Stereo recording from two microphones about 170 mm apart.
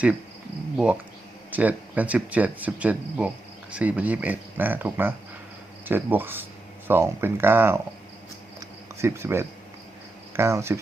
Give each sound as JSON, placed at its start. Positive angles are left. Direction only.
{"t": 1.5, "sound": "speech", "side_deg": -10}
{"t": 9.0, "sound": "speech", "side_deg": -15}